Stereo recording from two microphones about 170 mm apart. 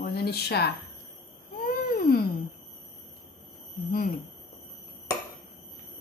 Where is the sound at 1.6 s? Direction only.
55° left (ahead or behind).